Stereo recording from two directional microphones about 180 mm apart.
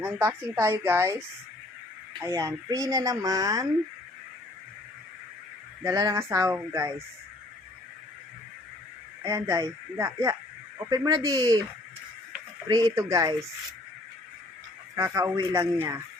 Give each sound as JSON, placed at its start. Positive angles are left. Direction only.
{"t": 0.0, "sound": "speech", "side_deg": -15}
{"t": 2.2, "sound": "speech", "side_deg": -15}
{"t": 5.8, "sound": "speech", "side_deg": -20}
{"t": 9.2, "sound": "speech", "side_deg": -15}
{"t": 12.6, "sound": "speech", "side_deg": -20}
{"t": 14.9, "sound": "speech", "side_deg": -15}